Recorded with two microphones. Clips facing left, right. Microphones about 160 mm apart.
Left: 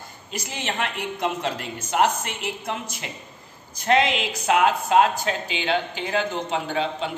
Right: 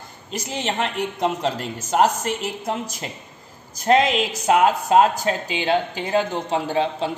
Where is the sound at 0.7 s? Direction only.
30° right (ahead or behind).